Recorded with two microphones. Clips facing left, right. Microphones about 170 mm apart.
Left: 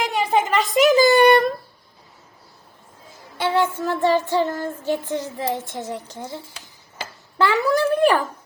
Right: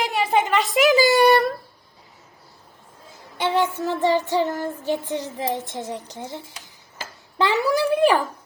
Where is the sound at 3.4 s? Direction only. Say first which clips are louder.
Left 1 dB; 15° right (ahead or behind).